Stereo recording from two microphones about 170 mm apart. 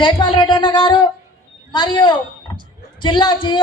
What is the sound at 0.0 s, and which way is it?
A man's voice, 25° left (ahead or behind).